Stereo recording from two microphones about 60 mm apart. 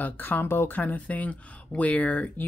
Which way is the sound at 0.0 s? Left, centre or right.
Left.